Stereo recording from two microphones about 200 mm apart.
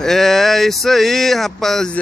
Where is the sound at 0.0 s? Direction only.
Centre (ahead or behind).